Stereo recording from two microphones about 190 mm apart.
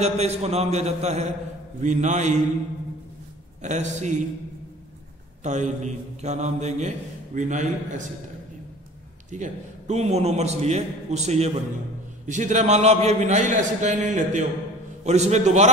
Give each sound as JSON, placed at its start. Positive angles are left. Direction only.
{"t": 0.0, "sound": "a man's voice", "side_deg": -35}
{"t": 3.6, "sound": "a man's voice", "side_deg": -40}
{"t": 5.4, "sound": "a man's voice", "side_deg": -40}
{"t": 9.3, "sound": "a man's voice", "side_deg": -40}